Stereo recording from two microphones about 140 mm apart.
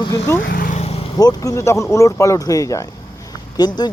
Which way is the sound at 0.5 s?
90° left.